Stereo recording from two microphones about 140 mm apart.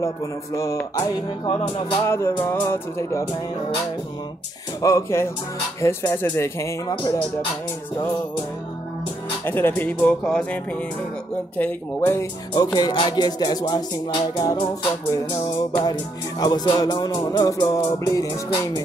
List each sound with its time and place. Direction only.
0.9 s music: 35° left (ahead or behind)
2.0 s music: 20° left (ahead or behind)
4.8 s music: 20° left (ahead or behind)
9.4 s speech: 15° left (ahead or behind)
12.5 s music: 30° left (ahead or behind)